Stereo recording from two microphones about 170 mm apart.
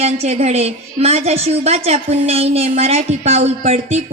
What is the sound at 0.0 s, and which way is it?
A woman's voice, 40° right (ahead or behind).